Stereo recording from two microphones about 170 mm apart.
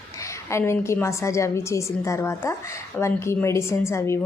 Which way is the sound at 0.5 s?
15° left (ahead or behind).